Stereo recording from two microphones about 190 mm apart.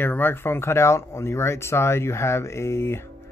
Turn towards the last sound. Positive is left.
turn(degrees=15)  # may be behind; listen again after turning